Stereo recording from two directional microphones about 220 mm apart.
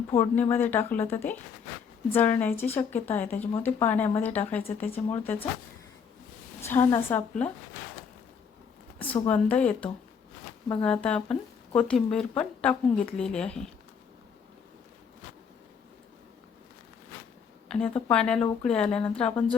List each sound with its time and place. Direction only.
0.2 s a woman's voice: 10° left (ahead or behind)
6.6 s a woman's voice: 10° left (ahead or behind)
9.0 s a woman's voice: 10° left (ahead or behind)
17.7 s speech: 5° left (ahead or behind)